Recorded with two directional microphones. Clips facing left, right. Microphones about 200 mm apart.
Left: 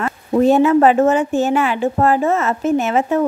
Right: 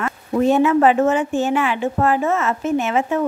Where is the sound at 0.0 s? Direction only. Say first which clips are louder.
Left 3 dB; 35° left (ahead or behind).